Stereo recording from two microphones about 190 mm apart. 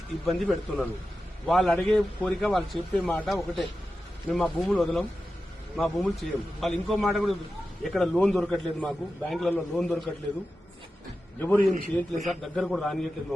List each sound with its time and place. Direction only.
0.3 s a man's voice: centre (ahead or behind)
11.3 s a man's voice: 10° left (ahead or behind)
11.7 s a man's voice: 40° right (ahead or behind)
12.4 s a man's voice: centre (ahead or behind)